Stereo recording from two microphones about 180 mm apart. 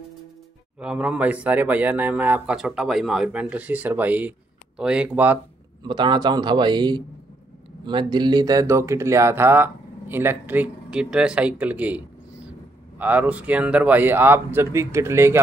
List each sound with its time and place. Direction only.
0.7 s speech: 5° right (ahead or behind)
5.9 s a man's voice: 25° right (ahead or behind)